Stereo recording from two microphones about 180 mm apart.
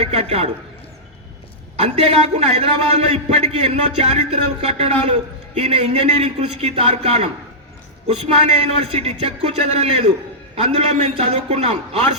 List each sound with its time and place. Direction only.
0.0 s a man's voice: 35° right (ahead or behind)
1.7 s a man's voice: 35° right (ahead or behind)